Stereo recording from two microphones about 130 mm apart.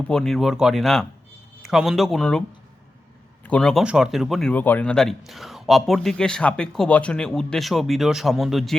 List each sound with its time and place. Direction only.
0.1 s speech: 5° left (ahead or behind)
3.4 s speech: 10° left (ahead or behind)
4.5 s speech: 15° left (ahead or behind)